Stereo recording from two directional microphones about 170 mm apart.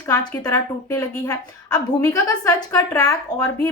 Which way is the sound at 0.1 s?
20° left (ahead or behind).